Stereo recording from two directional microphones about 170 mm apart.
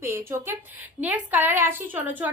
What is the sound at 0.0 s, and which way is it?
A woman's voice, 15° right (ahead or behind).